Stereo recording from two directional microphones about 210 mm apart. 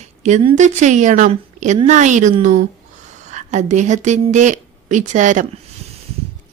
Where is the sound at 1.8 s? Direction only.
35° right (ahead or behind).